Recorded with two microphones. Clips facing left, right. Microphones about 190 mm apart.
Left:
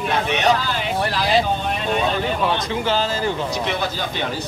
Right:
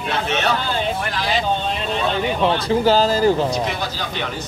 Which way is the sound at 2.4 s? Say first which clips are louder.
Right 5 dB; 35° right (ahead or behind).